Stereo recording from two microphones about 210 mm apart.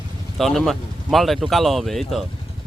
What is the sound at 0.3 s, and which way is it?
Speech, centre (ahead or behind).